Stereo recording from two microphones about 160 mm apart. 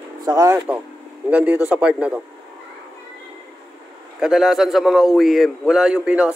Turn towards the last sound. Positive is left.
turn(degrees=-5)  # may be behind; listen again after turning